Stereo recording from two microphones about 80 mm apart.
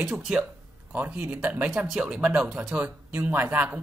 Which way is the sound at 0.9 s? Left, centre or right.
Centre.